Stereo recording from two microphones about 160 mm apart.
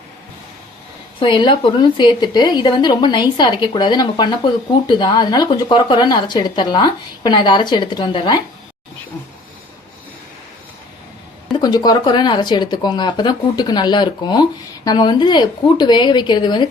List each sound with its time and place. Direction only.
1.2 s a woman's voice: 30° left (ahead or behind)
11.6 s a woman's voice: 25° left (ahead or behind)